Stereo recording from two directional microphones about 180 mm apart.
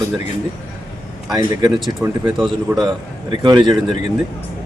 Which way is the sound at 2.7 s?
15° right (ahead or behind).